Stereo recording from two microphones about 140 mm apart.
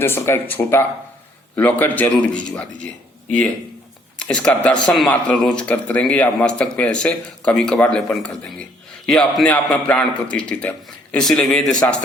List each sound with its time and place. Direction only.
0.0 s speech: 15° left (ahead or behind)